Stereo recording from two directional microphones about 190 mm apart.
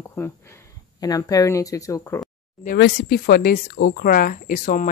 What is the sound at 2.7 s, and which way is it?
Speech, 60° left (ahead or behind).